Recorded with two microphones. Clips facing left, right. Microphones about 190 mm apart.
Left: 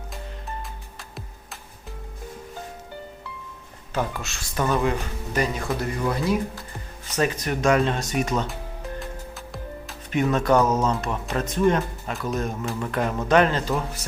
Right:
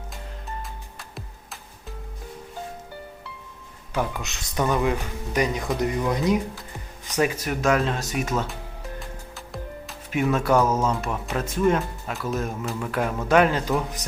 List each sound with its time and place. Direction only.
3.9 s speech: 10° right (ahead or behind)
7.2 s speech: 5° right (ahead or behind)